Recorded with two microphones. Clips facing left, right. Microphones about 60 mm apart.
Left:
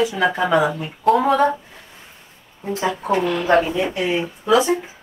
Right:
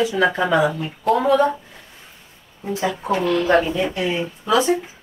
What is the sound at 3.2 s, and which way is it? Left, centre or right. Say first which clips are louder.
Speech: right 1 dB; centre.